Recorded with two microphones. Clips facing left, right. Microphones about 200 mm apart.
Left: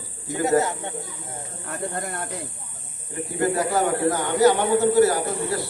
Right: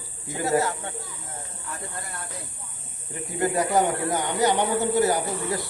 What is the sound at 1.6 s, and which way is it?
Speech, 60° left (ahead or behind).